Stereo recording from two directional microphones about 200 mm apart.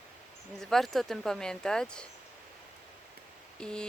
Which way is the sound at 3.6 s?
5° left (ahead or behind).